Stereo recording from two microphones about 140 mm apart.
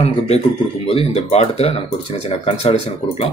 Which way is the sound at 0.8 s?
45° left (ahead or behind).